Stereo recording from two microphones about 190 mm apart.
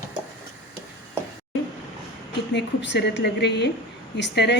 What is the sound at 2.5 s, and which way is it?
A woman's voice, 65° left (ahead or behind).